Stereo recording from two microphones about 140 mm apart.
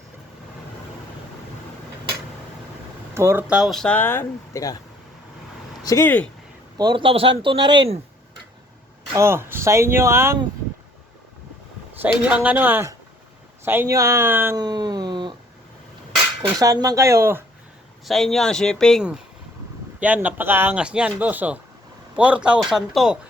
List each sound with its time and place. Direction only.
3.2 s speech: 20° right (ahead or behind)
3.4 s speech: 5° right (ahead or behind); by 4.8 s 20° left (ahead or behind)
5.8 s speech: 25° left (ahead or behind)
6.7 s speech: 35° right (ahead or behind)
9.1 s speech: 20° right (ahead or behind)
12.0 s speech: 10° right (ahead or behind)
14.5 s speech: 30° right (ahead or behind)
16.4 s speech: 25° right (ahead or behind)
18.0 s speech: centre (ahead or behind)
20.0 s speech: 10° right (ahead or behind)